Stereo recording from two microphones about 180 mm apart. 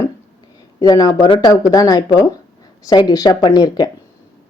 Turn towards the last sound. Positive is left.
turn(degrees=20)  # may be behind; listen again after turning